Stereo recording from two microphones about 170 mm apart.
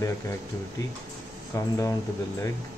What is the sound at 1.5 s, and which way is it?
Speech, 20° left (ahead or behind).